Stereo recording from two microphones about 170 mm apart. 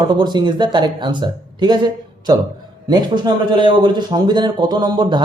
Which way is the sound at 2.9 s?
25° right (ahead or behind).